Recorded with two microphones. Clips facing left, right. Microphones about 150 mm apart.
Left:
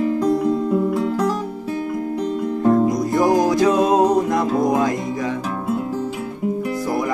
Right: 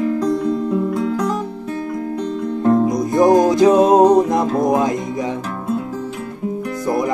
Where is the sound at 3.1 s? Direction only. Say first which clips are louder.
Right 6 dB; 20° right (ahead or behind).